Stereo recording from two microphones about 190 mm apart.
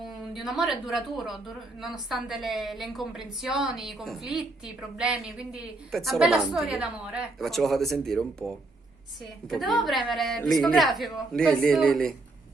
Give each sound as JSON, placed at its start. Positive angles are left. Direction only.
{"t": 0.0, "sound": "a woman's voice", "side_deg": 0}